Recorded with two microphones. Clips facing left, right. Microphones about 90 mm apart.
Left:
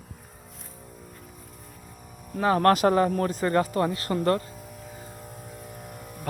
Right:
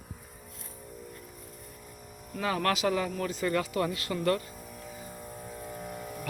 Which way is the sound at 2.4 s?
40° left (ahead or behind).